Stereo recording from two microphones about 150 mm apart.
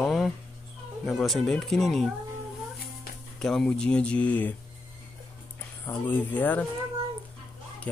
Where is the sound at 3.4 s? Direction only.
5° left (ahead or behind).